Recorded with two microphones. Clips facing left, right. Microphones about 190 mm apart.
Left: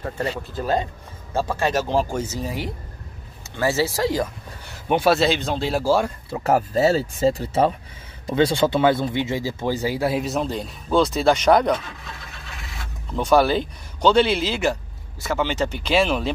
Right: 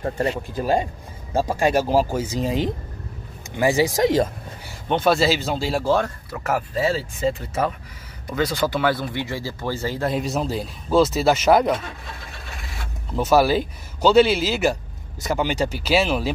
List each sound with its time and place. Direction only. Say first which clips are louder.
0.4 s speech: right 2 dB; 15° right (ahead or behind)
4.8 s speech: left 1 dB; 5° left (ahead or behind)
6.3 s speech: left 4 dB; 30° left (ahead or behind); by 11.8 s 5° right (ahead or behind)
13.1 s speech: even; 5° right (ahead or behind)